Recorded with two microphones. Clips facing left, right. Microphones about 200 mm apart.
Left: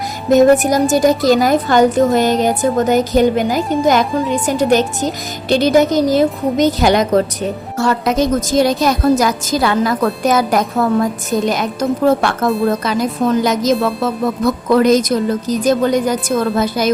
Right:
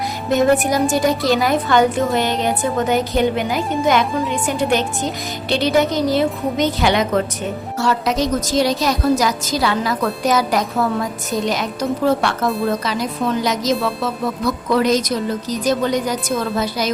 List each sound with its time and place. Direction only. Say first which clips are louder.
0.3 s speech: left 6 dB; 40° left (ahead or behind)
3.6 s a woman's voice: left 4 dB; centre (ahead or behind)
4.4 s speech: left 6 dB; 40° left (ahead or behind)
7.8 s speech: left 4 dB; 50° left (ahead or behind)